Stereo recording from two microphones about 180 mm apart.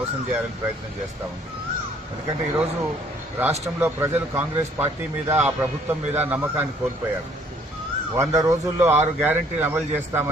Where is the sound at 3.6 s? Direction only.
15° right (ahead or behind).